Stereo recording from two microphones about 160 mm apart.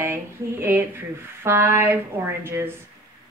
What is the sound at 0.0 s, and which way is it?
Speech, 15° right (ahead or behind).